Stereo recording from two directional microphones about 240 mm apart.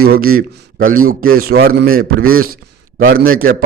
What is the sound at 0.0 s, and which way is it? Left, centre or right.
A man's voice, right.